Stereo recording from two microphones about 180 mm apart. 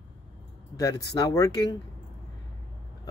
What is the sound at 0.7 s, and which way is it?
Speech, 20° left (ahead or behind).